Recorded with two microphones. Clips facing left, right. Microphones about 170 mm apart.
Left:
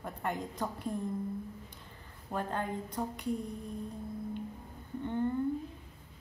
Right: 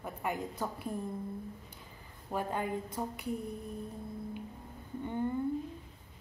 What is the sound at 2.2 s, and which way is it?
A woman's voice, 10° right (ahead or behind).